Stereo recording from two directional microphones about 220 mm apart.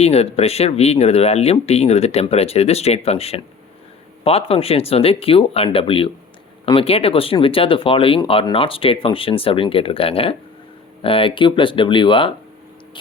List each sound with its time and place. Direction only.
0.0 s speech: 30° left (ahead or behind)